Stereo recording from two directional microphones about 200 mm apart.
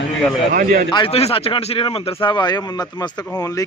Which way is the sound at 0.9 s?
25° left (ahead or behind).